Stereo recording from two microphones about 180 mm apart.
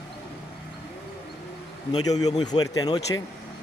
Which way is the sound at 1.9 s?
20° left (ahead or behind).